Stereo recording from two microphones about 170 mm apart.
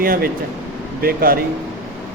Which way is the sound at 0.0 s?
60° right (ahead or behind).